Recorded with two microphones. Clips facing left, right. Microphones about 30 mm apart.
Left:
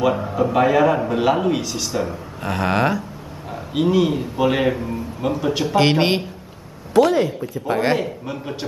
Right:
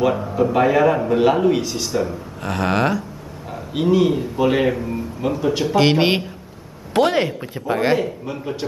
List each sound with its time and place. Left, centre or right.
0.4 s a man's voice: centre
6.9 s speech: right
7.6 s a man's voice: centre